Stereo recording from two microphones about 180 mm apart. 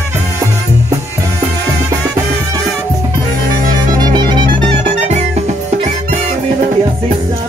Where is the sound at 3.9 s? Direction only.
25° right (ahead or behind).